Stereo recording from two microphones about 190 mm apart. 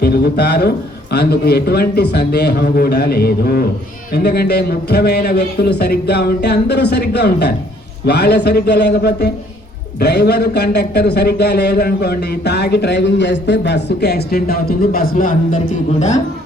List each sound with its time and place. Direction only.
0.0 s a man's voice: 55° left (ahead or behind); by 16.2 s 35° left (ahead or behind)